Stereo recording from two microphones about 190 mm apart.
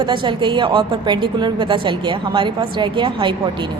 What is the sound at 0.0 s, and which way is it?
A woman's voice, 25° right (ahead or behind).